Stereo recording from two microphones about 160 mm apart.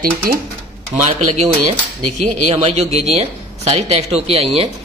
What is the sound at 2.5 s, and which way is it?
Speech, 40° right (ahead or behind).